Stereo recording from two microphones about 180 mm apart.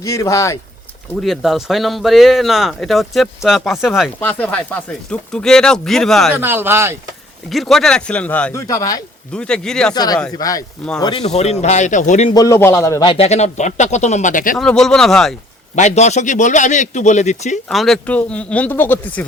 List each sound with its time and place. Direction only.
0.0 s speech: 15° left (ahead or behind)
1.2 s speech: centre (ahead or behind)
4.2 s speech: 10° left (ahead or behind)
6.3 s speech: 10° right (ahead or behind)
7.5 s speech: centre (ahead or behind)
8.6 s speech: 20° left (ahead or behind)
9.3 s speech: 5° left (ahead or behind)
9.9 s speech: 20° left (ahead or behind)
11.0 s a man's voice: 30° left (ahead or behind)
12.3 s a man's voice: 20° left (ahead or behind); by 14.6 s 45° left (ahead or behind)
14.6 s speech: 5° left (ahead or behind)
15.7 s a man's voice: 40° left (ahead or behind)
17.7 s speech: centre (ahead or behind)